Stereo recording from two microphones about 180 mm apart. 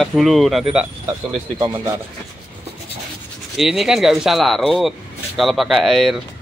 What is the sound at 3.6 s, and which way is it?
Speech, centre (ahead or behind).